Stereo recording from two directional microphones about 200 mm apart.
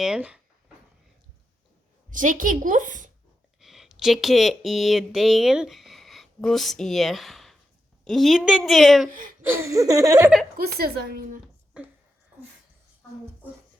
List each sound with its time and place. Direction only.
0.0 s speech: 5° right (ahead or behind)
2.0 s a woman's voice: 40° right (ahead or behind)
3.6 s a woman's voice: centre (ahead or behind)
9.0 s a woman's voice: 45° right (ahead or behind)
9.5 s speech: 15° right (ahead or behind)
10.6 s a woman's voice: 50° right (ahead or behind)
11.8 s speech: 5° right (ahead or behind)